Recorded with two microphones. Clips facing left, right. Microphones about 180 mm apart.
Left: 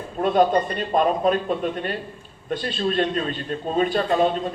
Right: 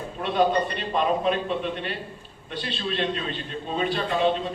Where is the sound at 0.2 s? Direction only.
45° left (ahead or behind).